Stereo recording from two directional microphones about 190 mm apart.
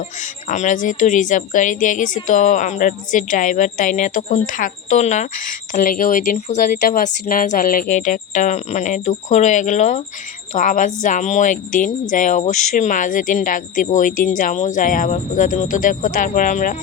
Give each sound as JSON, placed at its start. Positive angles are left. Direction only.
{"t": 0.2, "sound": "a woman's voice", "side_deg": 40}